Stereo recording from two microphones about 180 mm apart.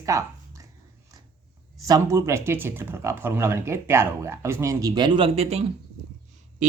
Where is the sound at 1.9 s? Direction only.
15° right (ahead or behind).